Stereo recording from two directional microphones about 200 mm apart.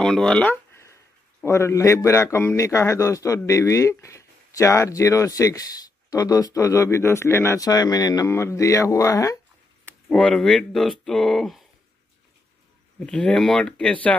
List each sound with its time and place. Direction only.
0.0 s a sound: 5° left (ahead or behind)
1.4 s a man's voice: 15° left (ahead or behind)
10.0 s speech: 5° left (ahead or behind)
13.0 s speech: 5° left (ahead or behind)